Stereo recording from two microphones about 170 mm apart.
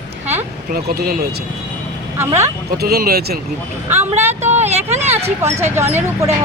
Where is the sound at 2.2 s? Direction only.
15° right (ahead or behind).